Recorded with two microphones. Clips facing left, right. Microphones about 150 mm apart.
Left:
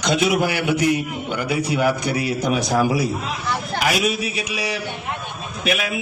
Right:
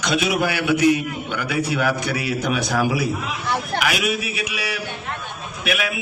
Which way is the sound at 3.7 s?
35° left (ahead or behind).